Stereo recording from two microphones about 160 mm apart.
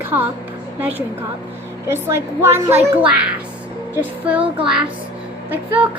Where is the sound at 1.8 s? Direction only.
15° right (ahead or behind).